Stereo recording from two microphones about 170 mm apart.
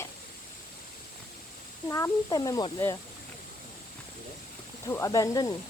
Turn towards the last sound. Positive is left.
turn(degrees=20)  # may be behind; listen again after turning